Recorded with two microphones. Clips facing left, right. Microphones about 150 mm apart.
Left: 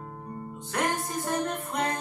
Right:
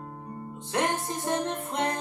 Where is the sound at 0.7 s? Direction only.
25° right (ahead or behind).